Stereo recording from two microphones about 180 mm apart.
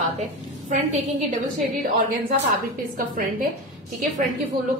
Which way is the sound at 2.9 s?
50° right (ahead or behind).